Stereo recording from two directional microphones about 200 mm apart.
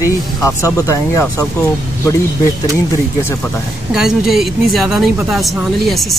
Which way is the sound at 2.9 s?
15° left (ahead or behind).